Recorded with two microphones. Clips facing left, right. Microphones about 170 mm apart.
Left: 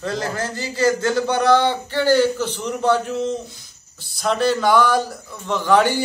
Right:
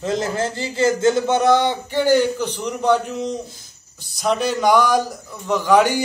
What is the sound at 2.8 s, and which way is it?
Speech, 5° left (ahead or behind).